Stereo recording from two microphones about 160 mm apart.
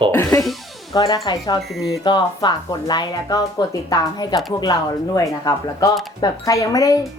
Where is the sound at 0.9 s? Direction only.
25° left (ahead or behind).